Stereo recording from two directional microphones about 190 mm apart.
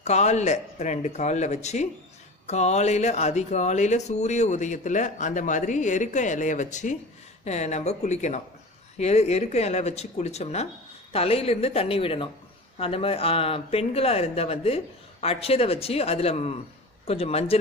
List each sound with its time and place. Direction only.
0.0 s speech: 35° left (ahead or behind)